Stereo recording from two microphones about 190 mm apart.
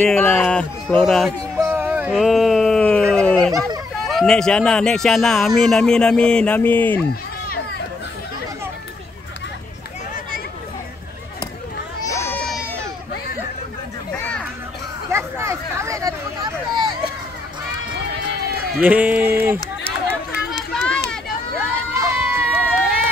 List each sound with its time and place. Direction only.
0.0 s speech: 5° left (ahead or behind)
1.6 s a sound: 10° right (ahead or behind)
2.1 s speech: centre (ahead or behind)
12.0 s a sound: 15° left (ahead or behind)
14.1 s a sound: 10° left (ahead or behind)
15.1 s hubbub: 15° right (ahead or behind)
18.8 s speech: 10° right (ahead or behind)
20.5 s run: 5° left (ahead or behind)
22.1 s run: 10° right (ahead or behind)